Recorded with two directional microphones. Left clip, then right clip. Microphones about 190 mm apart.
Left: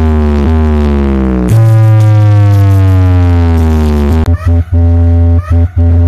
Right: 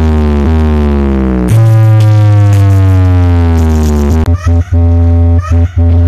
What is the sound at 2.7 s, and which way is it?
Music, 15° right (ahead or behind).